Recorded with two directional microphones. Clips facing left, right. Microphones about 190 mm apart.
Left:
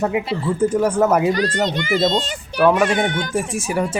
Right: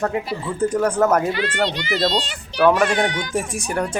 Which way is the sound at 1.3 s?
40° left (ahead or behind).